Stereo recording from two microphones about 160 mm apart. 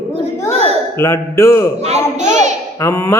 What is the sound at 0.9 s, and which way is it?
Speech, 15° left (ahead or behind).